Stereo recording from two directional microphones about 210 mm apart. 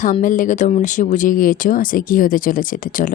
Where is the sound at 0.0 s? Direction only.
40° left (ahead or behind).